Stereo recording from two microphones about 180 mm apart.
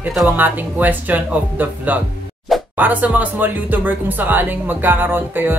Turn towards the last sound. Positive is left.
turn(degrees=-10)  # may be behind; listen again after turning